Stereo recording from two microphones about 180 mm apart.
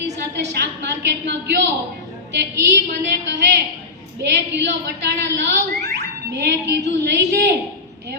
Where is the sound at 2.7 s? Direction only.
70° right (ahead or behind).